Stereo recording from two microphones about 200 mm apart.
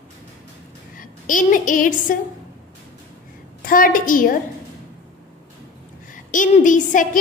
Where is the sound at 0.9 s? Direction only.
40° left (ahead or behind).